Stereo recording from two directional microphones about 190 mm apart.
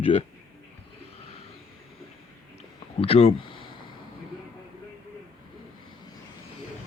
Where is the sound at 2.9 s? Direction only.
30° left (ahead or behind).